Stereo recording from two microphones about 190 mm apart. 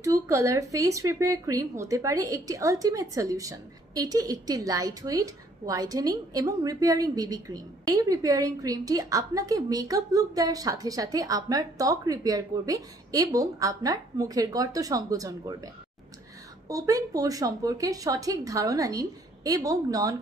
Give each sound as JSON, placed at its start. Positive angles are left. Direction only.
{"t": 0.0, "sound": "a woman's voice", "side_deg": -15}